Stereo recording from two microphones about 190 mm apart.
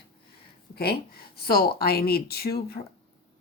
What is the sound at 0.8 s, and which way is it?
Speech, 55° left (ahead or behind).